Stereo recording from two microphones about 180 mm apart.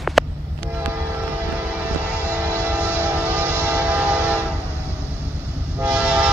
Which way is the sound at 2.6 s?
10° right (ahead or behind).